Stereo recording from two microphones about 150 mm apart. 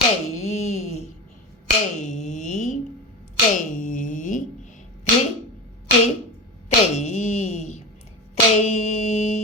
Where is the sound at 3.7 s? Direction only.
60° left (ahead or behind).